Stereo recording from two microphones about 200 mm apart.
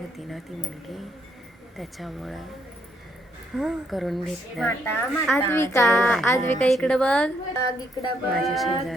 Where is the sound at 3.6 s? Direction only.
Centre (ahead or behind).